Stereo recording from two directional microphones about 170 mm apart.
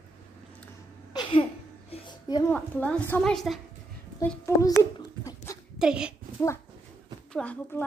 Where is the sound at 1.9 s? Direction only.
25° left (ahead or behind).